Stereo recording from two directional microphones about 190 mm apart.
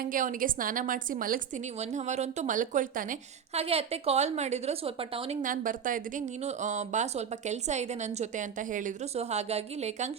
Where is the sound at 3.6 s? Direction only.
30° right (ahead or behind).